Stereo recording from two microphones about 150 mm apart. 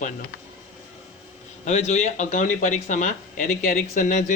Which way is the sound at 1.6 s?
50° left (ahead or behind).